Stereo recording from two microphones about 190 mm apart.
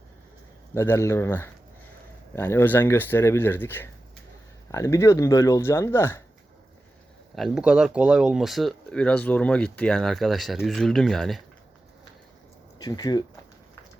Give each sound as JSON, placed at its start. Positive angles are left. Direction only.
{"t": 0.7, "sound": "speech", "side_deg": 15}
{"t": 7.3, "sound": "speech", "side_deg": 0}
{"t": 12.8, "sound": "speech", "side_deg": 20}